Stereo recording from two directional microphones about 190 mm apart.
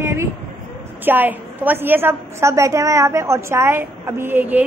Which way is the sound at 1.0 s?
10° right (ahead or behind).